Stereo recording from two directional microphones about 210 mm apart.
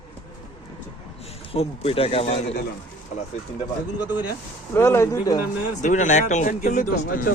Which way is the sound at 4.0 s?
10° right (ahead or behind).